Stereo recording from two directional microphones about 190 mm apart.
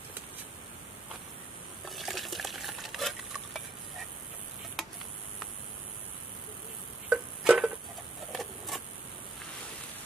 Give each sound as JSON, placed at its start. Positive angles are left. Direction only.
{"t": 1.9, "sound": "stir", "side_deg": 0}
{"t": 7.1, "sound": "music", "side_deg": -5}
{"t": 8.3, "sound": "printer", "side_deg": 0}